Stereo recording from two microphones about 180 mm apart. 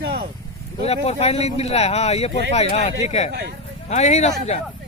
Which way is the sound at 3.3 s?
65° right (ahead or behind).